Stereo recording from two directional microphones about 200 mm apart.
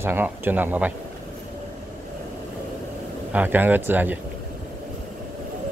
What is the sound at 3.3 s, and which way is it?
Speech, 10° right (ahead or behind).